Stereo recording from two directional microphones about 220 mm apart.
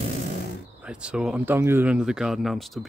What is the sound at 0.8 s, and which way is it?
Speech, 5° right (ahead or behind).